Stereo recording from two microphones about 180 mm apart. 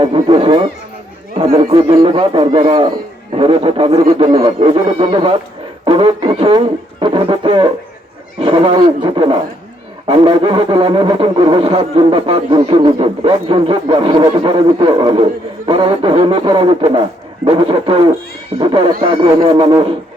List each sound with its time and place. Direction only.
0.0 s speech: 30° right (ahead or behind)
2.0 s speech: 30° right (ahead or behind)